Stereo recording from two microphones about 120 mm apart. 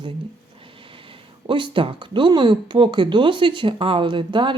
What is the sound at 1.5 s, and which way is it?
Speech, 45° right (ahead or behind).